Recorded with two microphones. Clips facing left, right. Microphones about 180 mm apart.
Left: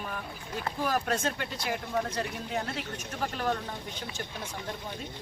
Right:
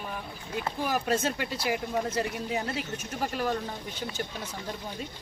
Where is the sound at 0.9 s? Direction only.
5° right (ahead or behind).